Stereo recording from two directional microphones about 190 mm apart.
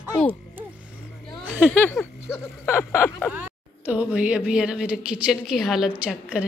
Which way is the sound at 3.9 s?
5° right (ahead or behind).